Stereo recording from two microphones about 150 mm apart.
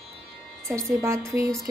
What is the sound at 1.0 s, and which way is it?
Speech, 20° right (ahead or behind).